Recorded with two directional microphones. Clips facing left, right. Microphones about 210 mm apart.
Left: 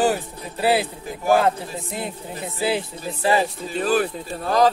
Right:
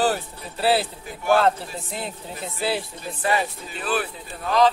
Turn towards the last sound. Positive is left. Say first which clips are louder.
# left 1 dB
turn(degrees=45)  # may be behind; listen again after turning